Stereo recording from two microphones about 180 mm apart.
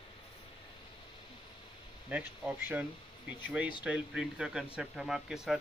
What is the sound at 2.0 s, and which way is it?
Speech, 10° right (ahead or behind).